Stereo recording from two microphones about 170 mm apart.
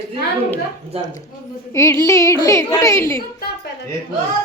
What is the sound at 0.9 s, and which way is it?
Speech, 35° right (ahead or behind).